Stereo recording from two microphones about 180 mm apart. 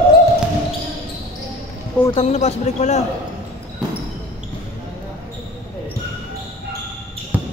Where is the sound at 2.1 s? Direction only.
35° left (ahead or behind).